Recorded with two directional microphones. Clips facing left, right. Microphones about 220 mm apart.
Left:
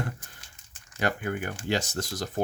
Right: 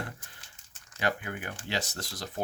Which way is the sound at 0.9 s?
45° left (ahead or behind).